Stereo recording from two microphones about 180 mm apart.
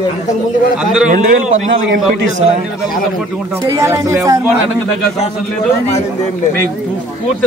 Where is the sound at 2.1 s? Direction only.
90° right.